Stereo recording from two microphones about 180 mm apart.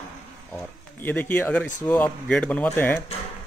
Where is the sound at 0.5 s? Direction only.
10° left (ahead or behind).